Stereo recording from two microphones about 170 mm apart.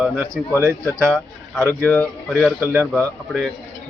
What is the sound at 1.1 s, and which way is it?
Speech, 5° left (ahead or behind).